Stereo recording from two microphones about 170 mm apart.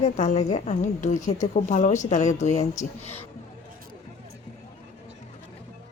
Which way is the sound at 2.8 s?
10° left (ahead or behind).